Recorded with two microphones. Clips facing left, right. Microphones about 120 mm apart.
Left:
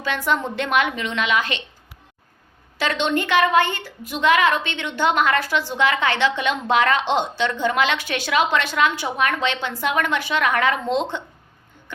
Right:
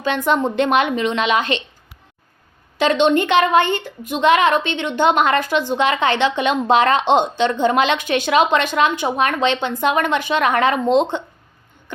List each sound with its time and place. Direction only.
0.0 s a woman's voice: 20° right (ahead or behind)
2.7 s a woman's voice: 20° right (ahead or behind)